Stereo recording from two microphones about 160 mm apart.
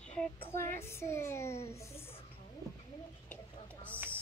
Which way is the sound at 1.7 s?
15° left (ahead or behind).